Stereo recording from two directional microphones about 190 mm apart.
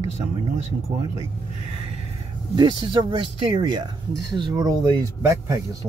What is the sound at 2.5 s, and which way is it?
Speech, 25° right (ahead or behind).